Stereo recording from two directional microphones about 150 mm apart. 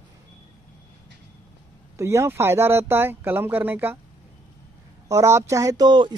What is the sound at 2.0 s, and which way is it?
Speech, 20° right (ahead or behind).